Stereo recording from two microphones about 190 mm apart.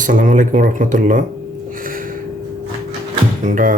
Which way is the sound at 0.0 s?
45° right (ahead or behind).